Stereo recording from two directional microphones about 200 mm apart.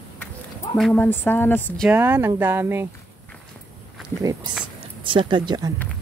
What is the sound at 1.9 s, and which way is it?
Speech, 10° right (ahead or behind).